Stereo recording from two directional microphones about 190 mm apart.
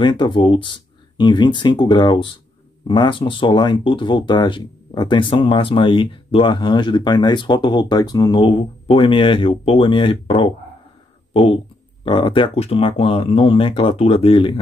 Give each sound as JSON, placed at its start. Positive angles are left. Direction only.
{"t": 0.0, "sound": "speech", "side_deg": 25}